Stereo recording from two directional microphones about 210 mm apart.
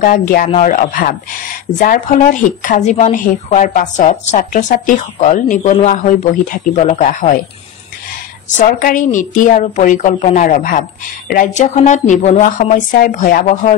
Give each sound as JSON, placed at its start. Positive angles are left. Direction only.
{"t": 0.0, "sound": "a woman's voice", "side_deg": 40}
{"t": 8.5, "sound": "a woman's voice", "side_deg": 35}